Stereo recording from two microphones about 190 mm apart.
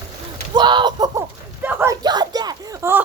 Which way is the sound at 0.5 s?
25° right (ahead or behind).